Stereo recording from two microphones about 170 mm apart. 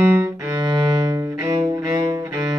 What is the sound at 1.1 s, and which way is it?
Cello, 20° right (ahead or behind).